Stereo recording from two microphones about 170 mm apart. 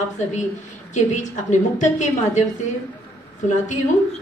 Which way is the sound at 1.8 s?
45° left (ahead or behind).